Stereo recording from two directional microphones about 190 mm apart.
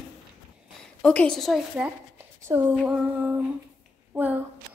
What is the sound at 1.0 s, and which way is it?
Speech, 5° left (ahead or behind).